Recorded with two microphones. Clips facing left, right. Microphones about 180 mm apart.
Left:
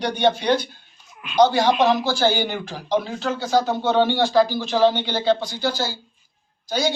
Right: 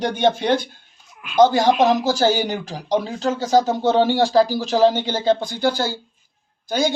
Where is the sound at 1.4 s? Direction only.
45° right (ahead or behind).